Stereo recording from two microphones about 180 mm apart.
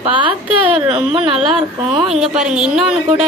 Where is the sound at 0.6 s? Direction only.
5° right (ahead or behind).